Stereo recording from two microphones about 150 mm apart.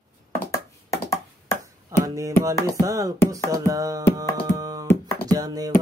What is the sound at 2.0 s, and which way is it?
Music, 20° right (ahead or behind).